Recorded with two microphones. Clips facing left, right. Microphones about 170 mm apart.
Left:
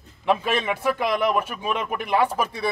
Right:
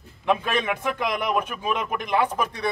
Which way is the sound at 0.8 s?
5° left (ahead or behind).